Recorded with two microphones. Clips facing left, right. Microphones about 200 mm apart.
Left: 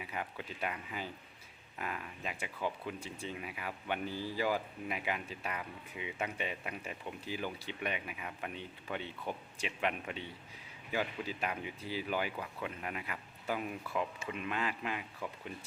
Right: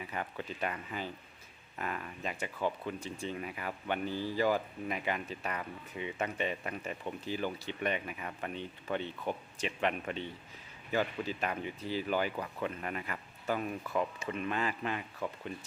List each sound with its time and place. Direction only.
0.0 s speech: 10° left (ahead or behind)
4.1 s speech: 15° right (ahead or behind)
4.4 s speech: 10° left (ahead or behind)